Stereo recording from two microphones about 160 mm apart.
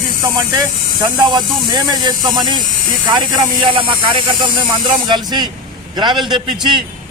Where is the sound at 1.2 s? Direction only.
25° right (ahead or behind).